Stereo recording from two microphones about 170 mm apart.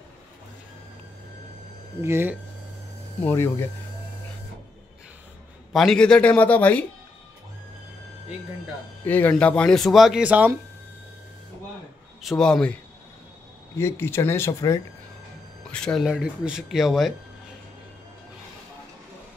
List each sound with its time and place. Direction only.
2.0 s speech: 15° right (ahead or behind)
3.3 s a man's voice: 15° left (ahead or behind)
5.7 s a man's voice: centre (ahead or behind)
9.0 s speech: 10° left (ahead or behind); by 10.6 s 10° right (ahead or behind)
12.2 s speech: centre (ahead or behind)
13.7 s a man's voice: 15° left (ahead or behind)
15.7 s speech: 5° left (ahead or behind)